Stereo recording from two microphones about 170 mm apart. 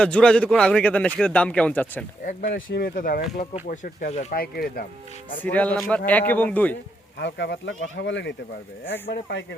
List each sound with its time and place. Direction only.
0.0 s a man's voice: 5° left (ahead or behind)
2.2 s speech: 60° left (ahead or behind); by 4.4 s 45° left (ahead or behind)
4.4 s speech: 60° left (ahead or behind)
5.4 s speech: 10° left (ahead or behind)
7.2 s speech: 90° left